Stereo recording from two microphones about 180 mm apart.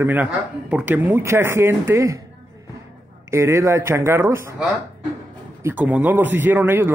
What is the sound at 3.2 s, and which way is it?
A man's voice, 15° right (ahead or behind).